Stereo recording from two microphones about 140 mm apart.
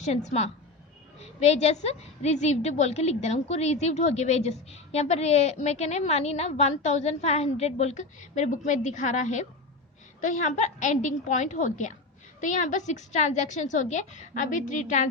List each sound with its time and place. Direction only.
0.0 s a woman's voice: 55° left (ahead or behind)